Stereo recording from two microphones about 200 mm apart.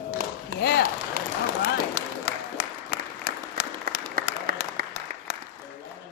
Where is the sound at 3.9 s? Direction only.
50° right (ahead or behind).